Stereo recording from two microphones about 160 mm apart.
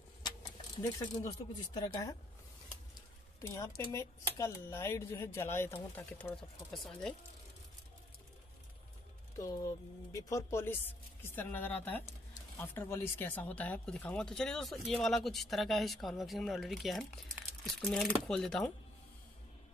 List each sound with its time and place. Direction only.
0.9 s speech: 25° left (ahead or behind)
3.3 s speech: 15° left (ahead or behind)
10.1 s speech: 15° left (ahead or behind)